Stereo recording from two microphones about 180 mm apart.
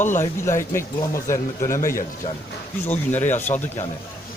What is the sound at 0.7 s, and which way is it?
Speech, 15° left (ahead or behind).